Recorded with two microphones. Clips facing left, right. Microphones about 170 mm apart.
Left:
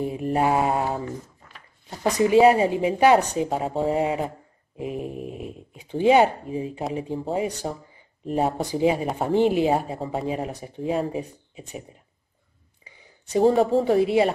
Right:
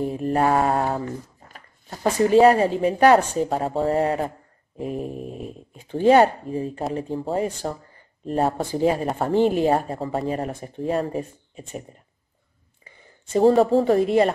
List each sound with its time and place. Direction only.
0.0 s speech: 5° left (ahead or behind)
1.9 s a woman's voice: 15° left (ahead or behind)
7.4 s speech: 15° left (ahead or behind)
8.3 s a woman's voice: 5° left (ahead or behind)
10.5 s speech: 15° left (ahead or behind)
10.8 s a woman's voice: centre (ahead or behind)
12.9 s a sound: 15° left (ahead or behind)
13.4 s a woman's voice: centre (ahead or behind)